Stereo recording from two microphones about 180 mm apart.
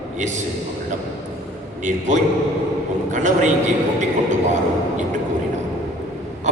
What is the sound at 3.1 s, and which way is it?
Speech, 45° right (ahead or behind).